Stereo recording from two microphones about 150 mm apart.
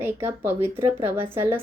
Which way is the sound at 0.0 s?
15° right (ahead or behind).